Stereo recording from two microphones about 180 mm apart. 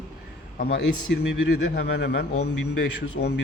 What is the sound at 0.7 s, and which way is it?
Speech, 75° left (ahead or behind).